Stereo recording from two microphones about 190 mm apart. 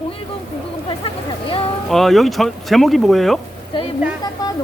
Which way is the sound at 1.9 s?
Centre (ahead or behind).